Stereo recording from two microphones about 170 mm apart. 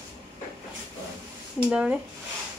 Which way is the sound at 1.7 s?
10° right (ahead or behind).